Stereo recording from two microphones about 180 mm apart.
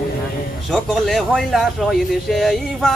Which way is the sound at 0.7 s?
Centre (ahead or behind).